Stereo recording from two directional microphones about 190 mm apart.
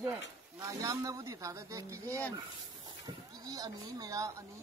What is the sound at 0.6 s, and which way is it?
Speech, 15° right (ahead or behind).